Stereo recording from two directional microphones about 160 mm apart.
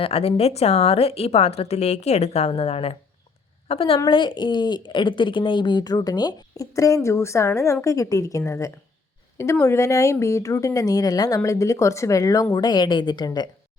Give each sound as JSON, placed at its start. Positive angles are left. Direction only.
{"t": 0.0, "sound": "a woman's voice", "side_deg": 40}